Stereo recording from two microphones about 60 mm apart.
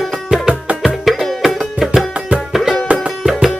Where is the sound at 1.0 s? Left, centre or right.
Centre.